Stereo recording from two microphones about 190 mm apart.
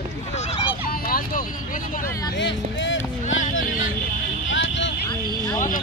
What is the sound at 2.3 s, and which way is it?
Speech, 70° left (ahead or behind).